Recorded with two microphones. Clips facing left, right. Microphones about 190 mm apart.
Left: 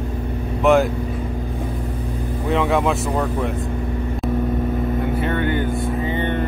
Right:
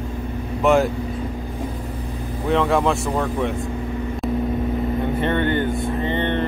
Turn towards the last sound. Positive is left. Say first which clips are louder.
# even
turn(degrees=10)  # may be behind; listen again after turning